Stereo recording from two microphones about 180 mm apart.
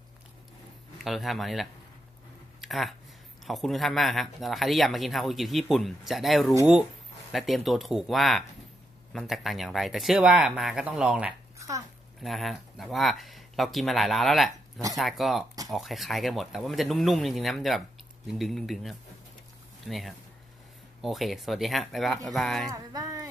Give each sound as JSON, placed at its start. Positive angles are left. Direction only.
{"t": 1.0, "sound": "speech", "side_deg": 0}
{"t": 2.6, "sound": "a sound", "side_deg": 0}
{"t": 3.4, "sound": "speech", "side_deg": 0}
{"t": 11.5, "sound": "a sound", "side_deg": -20}
{"t": 12.2, "sound": "speech", "side_deg": 0}
{"t": 22.7, "sound": "speech", "side_deg": -20}